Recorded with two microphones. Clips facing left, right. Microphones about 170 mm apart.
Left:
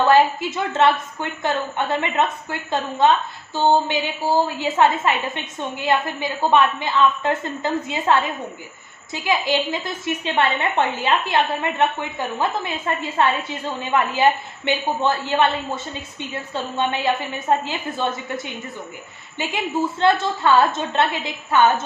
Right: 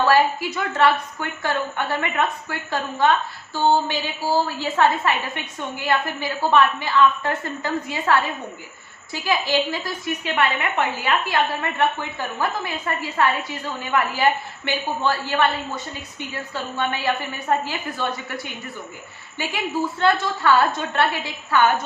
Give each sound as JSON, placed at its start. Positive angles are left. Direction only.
{"t": 0.0, "sound": "a woman's voice", "side_deg": 25}